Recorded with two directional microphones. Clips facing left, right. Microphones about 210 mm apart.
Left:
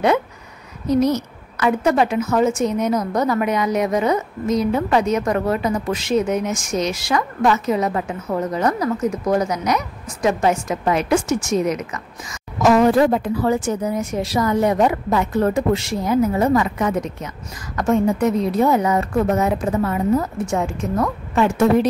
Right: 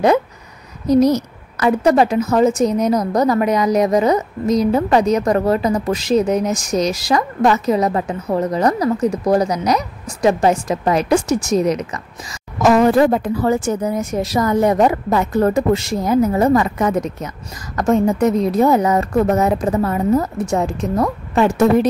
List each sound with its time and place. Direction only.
0.8 s a woman's voice: 40° right (ahead or behind)
12.6 s a woman's voice: 50° right (ahead or behind)